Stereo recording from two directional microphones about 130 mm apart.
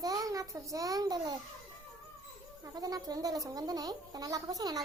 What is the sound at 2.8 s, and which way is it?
Speech, 30° right (ahead or behind).